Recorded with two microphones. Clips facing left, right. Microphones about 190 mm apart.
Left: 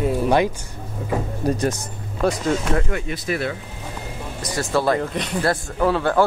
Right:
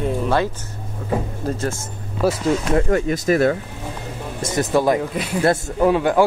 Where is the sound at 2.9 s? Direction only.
45° right (ahead or behind).